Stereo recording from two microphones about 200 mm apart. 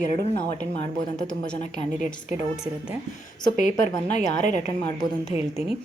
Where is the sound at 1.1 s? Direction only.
5° left (ahead or behind).